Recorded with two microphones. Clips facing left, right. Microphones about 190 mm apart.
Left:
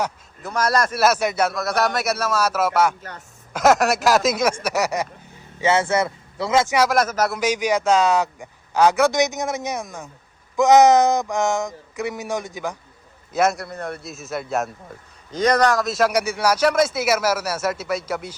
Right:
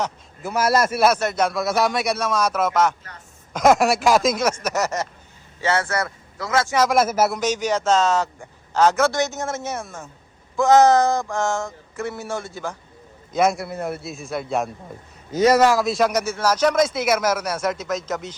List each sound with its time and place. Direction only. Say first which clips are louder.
0.4 s a man's voice: right 2 dB; 5° right (ahead or behind)
1.0 s a man's voice: even; 10° left (ahead or behind); by 6.7 s 25° left (ahead or behind)
6.9 s a man's voice: right 2 dB; 5° right (ahead or behind)
7.3 s speech: left 1 dB; 10° left (ahead or behind)
13.3 s a man's voice: right 1 dB; centre (ahead or behind)